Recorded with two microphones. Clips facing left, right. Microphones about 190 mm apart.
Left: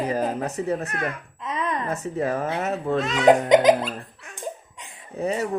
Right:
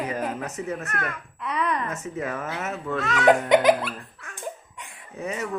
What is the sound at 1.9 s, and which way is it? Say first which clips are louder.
Speech: left 5 dB; 35° left (ahead or behind).